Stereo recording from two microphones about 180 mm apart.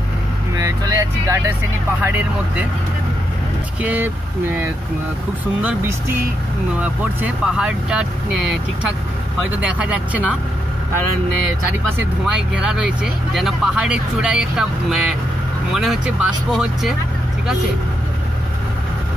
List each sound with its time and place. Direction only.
0.6 s speech: 20° right (ahead or behind)
3.8 s speech: 10° right (ahead or behind)
9.6 s speech: 5° right (ahead or behind)
12.3 s speech: 5° right (ahead or behind)